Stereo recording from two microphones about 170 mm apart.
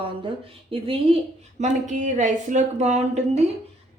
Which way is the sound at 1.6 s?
45° right (ahead or behind).